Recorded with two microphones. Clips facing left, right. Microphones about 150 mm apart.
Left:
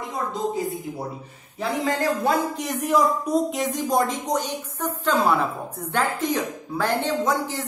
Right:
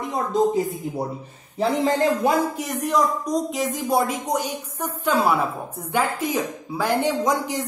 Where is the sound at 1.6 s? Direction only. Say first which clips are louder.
Right 4 dB; 25° right (ahead or behind).